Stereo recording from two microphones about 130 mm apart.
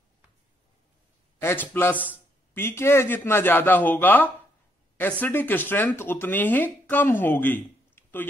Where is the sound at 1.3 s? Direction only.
15° left (ahead or behind).